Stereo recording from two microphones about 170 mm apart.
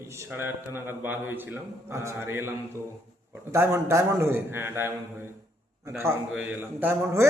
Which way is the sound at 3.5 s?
15° right (ahead or behind).